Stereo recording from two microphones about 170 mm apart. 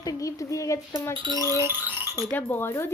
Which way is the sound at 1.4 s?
20° left (ahead or behind).